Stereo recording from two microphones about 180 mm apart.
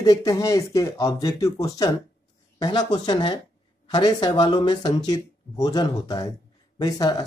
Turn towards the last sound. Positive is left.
turn(degrees=20)  # may be behind; listen again after turning